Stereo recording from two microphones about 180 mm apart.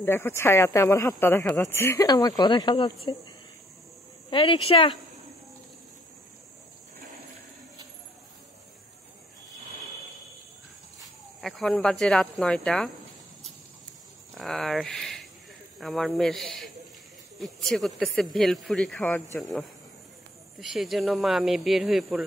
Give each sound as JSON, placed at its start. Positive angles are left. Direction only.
{"t": 0.0, "sound": "speech", "side_deg": 15}
{"t": 4.3, "sound": "speech", "side_deg": 30}
{"t": 11.0, "sound": "speech", "side_deg": 0}
{"t": 14.3, "sound": "speech", "side_deg": 0}
{"t": 20.5, "sound": "speech", "side_deg": 0}